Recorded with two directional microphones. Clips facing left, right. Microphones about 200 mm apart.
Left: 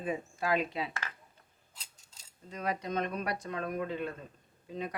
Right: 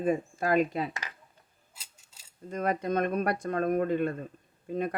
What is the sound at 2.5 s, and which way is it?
Speech, 50° right (ahead or behind).